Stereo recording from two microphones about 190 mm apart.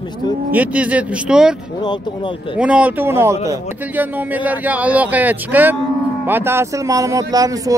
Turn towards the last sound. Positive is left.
turn(degrees=-20)  # may be behind; listen again after turning